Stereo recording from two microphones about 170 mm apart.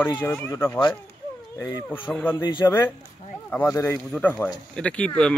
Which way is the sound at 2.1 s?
10° left (ahead or behind).